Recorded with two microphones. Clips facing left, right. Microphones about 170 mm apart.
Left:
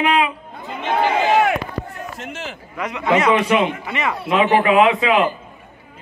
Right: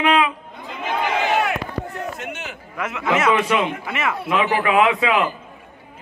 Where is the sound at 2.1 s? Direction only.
30° left (ahead or behind).